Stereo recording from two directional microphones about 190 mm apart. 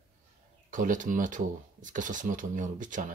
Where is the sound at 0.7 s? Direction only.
45° right (ahead or behind).